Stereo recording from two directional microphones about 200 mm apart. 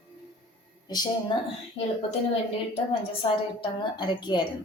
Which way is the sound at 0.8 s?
20° left (ahead or behind).